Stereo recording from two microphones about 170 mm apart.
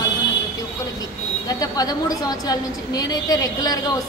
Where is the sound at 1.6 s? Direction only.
20° left (ahead or behind).